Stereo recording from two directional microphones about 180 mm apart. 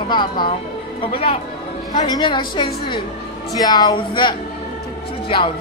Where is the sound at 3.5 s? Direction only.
20° left (ahead or behind).